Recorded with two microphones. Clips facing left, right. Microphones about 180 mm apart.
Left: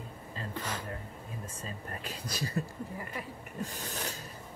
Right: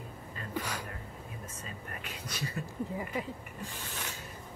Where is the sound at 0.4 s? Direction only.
25° left (ahead or behind).